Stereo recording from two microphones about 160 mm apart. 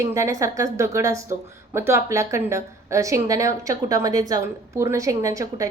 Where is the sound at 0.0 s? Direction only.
20° right (ahead or behind).